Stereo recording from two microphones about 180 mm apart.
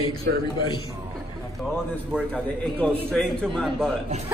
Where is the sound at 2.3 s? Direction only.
10° left (ahead or behind).